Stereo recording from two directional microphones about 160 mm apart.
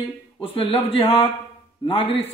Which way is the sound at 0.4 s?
35° left (ahead or behind).